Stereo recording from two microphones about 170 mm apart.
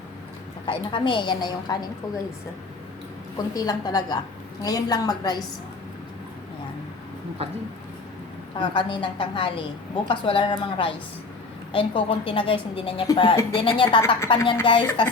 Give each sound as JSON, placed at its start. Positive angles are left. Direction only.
{"t": 0.6, "sound": "a woman's voice", "side_deg": 30}
{"t": 3.3, "sound": "a woman's voice", "side_deg": 20}
{"t": 8.5, "sound": "a woman's voice", "side_deg": 30}